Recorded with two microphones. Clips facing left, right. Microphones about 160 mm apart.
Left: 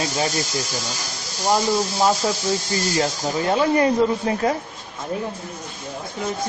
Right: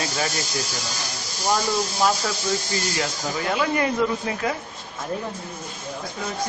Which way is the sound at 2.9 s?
30° left (ahead or behind).